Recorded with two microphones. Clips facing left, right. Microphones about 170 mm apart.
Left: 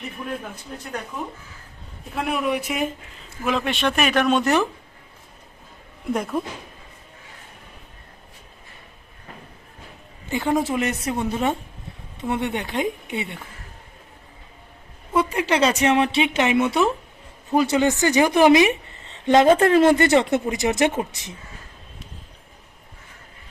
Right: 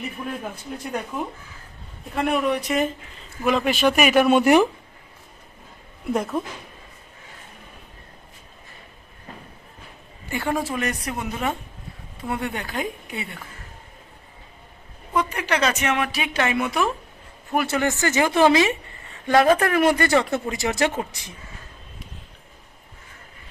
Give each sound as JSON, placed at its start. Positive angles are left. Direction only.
{"t": 2.1, "sound": "speech", "side_deg": 0}
{"t": 6.1, "sound": "a woman's voice", "side_deg": 0}
{"t": 10.2, "sound": "a woman's voice", "side_deg": 20}
{"t": 15.3, "sound": "a woman's voice", "side_deg": 30}